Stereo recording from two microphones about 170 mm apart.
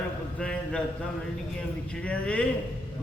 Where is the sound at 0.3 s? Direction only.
5° left (ahead or behind).